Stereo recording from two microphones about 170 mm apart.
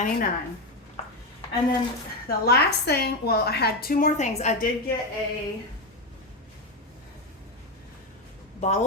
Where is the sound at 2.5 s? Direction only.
70° left (ahead or behind); by 4.7 s 45° left (ahead or behind).